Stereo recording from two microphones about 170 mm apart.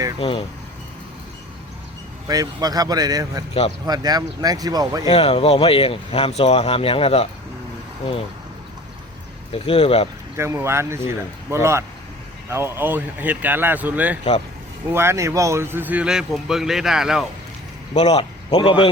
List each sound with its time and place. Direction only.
2.2 s speech: 20° right (ahead or behind)
5.0 s speech: 35° left (ahead or behind)
9.5 s speech: 35° left (ahead or behind)
10.3 s a man's voice: 15° right (ahead or behind)
17.9 s speech: 40° left (ahead or behind)